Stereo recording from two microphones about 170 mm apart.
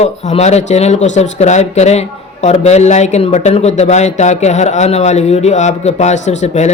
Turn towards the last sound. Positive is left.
turn(degrees=40)  # may be behind; listen again after turning